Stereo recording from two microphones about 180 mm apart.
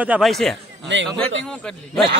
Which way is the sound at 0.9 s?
80° right.